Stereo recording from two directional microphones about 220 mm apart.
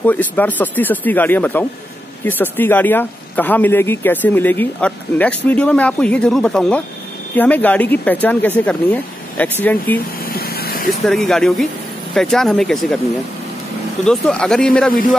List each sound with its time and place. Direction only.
0.0 s speech: 10° left (ahead or behind)
10.2 s a sound: 45° left (ahead or behind)
11.1 s speech: centre (ahead or behind)
14.0 s speech: 5° left (ahead or behind)